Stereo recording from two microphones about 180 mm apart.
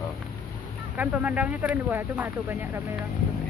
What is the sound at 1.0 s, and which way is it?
Speech, 10° right (ahead or behind).